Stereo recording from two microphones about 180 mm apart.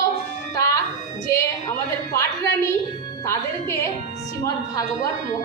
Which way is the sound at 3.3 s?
15° left (ahead or behind).